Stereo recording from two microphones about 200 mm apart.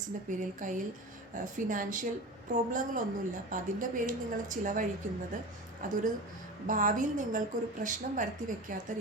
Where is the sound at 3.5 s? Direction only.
40° right (ahead or behind).